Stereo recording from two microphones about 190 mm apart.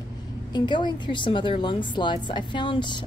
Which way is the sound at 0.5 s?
25° left (ahead or behind).